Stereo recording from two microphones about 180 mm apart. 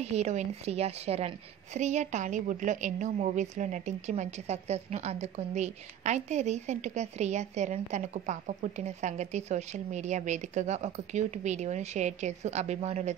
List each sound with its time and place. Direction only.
0.0 s a woman's voice: 40° right (ahead or behind)